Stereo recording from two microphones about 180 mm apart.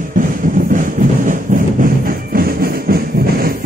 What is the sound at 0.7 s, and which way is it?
Music, 45° right (ahead or behind).